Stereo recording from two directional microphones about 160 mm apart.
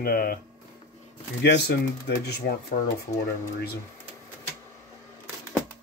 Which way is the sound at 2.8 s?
55° left (ahead or behind).